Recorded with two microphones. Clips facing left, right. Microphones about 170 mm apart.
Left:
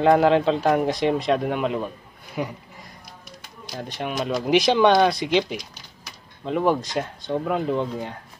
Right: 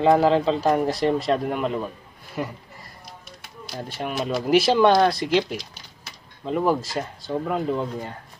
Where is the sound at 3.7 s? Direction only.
5° right (ahead or behind).